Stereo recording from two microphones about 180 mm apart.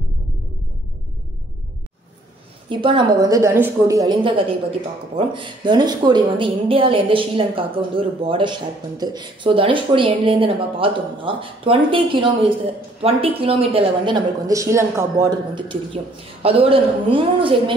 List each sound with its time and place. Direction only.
2.7 s speech: 30° right (ahead or behind)